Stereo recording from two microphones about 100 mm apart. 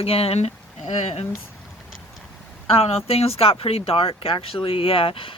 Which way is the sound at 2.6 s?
85° left.